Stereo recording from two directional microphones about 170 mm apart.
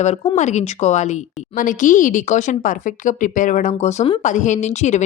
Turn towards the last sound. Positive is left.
turn(degrees=45)  # may be behind; listen again after turning